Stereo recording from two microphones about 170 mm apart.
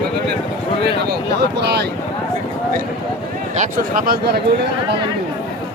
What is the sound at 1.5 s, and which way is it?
Speech, 75° right (ahead or behind).